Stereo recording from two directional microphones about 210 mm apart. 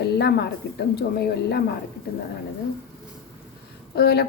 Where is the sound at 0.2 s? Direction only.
50° left (ahead or behind).